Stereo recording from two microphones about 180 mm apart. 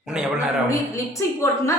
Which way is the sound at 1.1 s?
15° left (ahead or behind).